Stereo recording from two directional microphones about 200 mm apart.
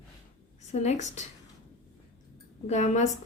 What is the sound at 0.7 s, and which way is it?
Speech, 35° left (ahead or behind).